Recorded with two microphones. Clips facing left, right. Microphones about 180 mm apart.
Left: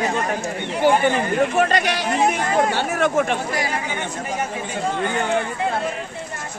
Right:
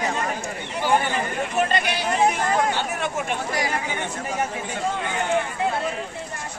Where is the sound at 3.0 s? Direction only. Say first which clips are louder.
Left 7 dB; 55° left (ahead or behind).